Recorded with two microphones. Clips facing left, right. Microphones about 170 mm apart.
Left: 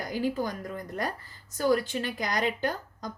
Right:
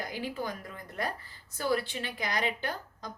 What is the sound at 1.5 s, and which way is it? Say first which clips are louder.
A woman's voice: left 5 dB; 45° left (ahead or behind).